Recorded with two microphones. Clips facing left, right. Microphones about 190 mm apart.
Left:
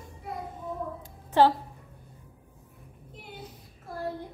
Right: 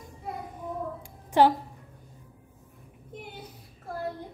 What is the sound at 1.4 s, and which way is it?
Speech, 15° right (ahead or behind).